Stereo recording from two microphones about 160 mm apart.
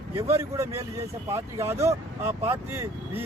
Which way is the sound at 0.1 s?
15° right (ahead or behind).